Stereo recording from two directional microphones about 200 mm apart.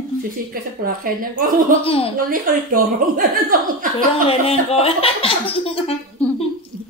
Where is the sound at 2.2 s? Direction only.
45° right (ahead or behind).